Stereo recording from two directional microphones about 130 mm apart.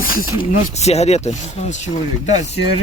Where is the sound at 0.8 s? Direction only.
55° left (ahead or behind).